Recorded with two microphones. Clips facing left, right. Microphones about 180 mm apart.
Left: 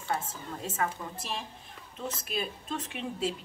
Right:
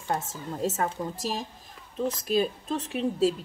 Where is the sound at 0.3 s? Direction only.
40° right (ahead or behind).